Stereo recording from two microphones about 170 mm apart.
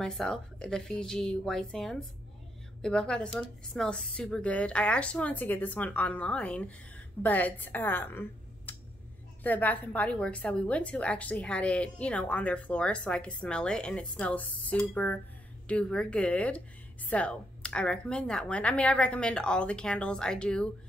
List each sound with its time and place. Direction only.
0.0 s a woman's voice: 5° left (ahead or behind)